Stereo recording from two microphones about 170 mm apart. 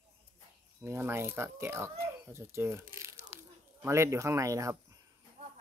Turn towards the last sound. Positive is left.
turn(degrees=-20)  # may be behind; listen again after turning